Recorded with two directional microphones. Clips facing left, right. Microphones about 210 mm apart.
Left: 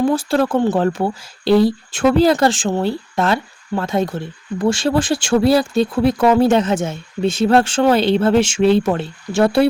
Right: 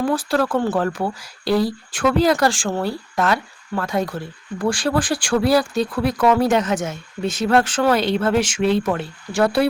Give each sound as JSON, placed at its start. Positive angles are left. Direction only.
{"t": 0.0, "sound": "speech", "side_deg": 25}